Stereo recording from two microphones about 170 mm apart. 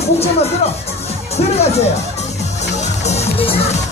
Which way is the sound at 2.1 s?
40° left (ahead or behind).